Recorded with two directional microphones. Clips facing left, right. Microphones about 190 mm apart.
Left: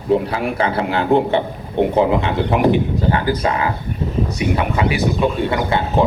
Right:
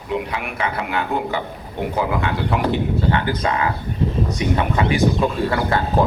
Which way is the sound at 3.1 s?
35° left (ahead or behind).